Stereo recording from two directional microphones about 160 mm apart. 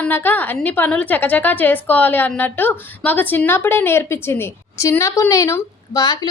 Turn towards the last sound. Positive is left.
turn(degrees=25)  # may be behind; listen again after turning